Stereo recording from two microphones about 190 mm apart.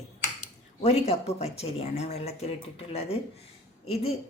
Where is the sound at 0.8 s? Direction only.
35° left (ahead or behind).